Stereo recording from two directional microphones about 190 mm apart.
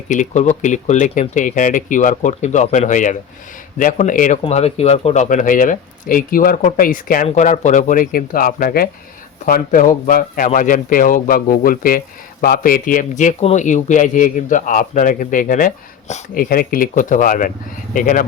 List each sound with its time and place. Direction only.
0.1 s speech: 40° left (ahead or behind)